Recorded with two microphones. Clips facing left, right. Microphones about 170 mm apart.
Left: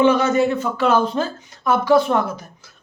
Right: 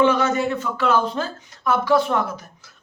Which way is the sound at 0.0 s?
15° left (ahead or behind).